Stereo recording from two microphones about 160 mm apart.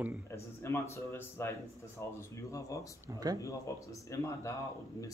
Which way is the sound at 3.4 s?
20° left (ahead or behind).